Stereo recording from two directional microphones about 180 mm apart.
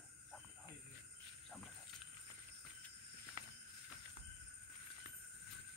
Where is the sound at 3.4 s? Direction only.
25° right (ahead or behind).